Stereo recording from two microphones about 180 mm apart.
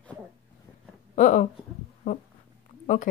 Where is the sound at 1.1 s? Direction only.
45° left (ahead or behind).